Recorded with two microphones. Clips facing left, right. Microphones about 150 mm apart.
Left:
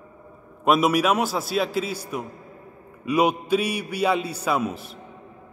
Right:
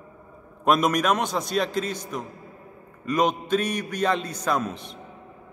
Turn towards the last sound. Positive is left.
turn(degrees=5)  # may be behind; listen again after turning